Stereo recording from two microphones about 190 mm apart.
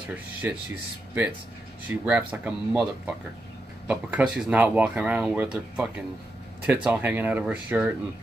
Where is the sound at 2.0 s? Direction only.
10° right (ahead or behind).